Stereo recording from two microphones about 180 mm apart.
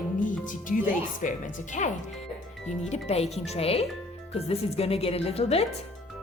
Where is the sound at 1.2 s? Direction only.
45° left (ahead or behind).